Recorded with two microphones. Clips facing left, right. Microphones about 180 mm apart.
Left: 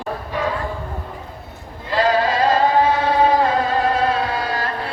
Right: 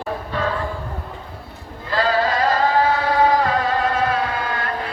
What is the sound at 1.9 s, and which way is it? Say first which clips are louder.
Chant: left 2 dB; 20° left (ahead or behind).